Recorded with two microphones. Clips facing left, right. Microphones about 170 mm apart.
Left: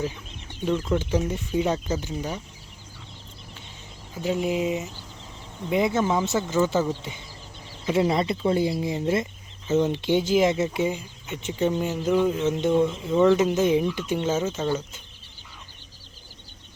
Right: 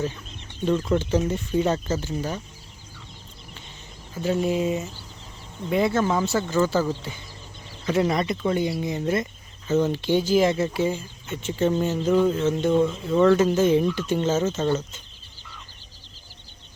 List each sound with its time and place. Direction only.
0.7 s speech: centre (ahead or behind)
0.9 s speech: 10° left (ahead or behind)
4.2 s speech: 15° left (ahead or behind)
7.9 s speech: 25° left (ahead or behind)